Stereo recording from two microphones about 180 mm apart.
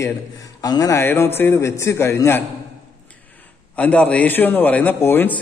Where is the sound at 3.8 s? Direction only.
10° left (ahead or behind).